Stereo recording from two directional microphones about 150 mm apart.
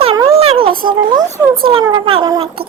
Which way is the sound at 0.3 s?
40° right (ahead or behind).